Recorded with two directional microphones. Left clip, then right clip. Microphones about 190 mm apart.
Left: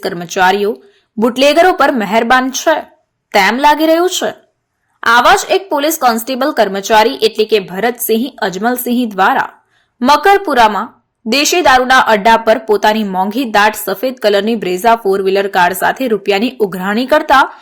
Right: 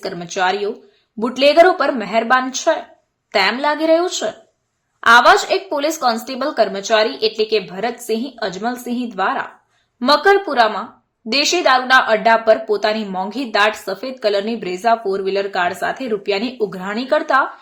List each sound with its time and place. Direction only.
0.0 s a woman's voice: 25° left (ahead or behind)